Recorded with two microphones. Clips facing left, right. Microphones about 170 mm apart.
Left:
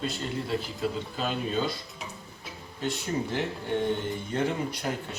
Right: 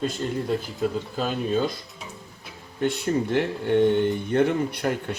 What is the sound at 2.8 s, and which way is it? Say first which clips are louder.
Speech: right 6 dB; 60° right (ahead or behind).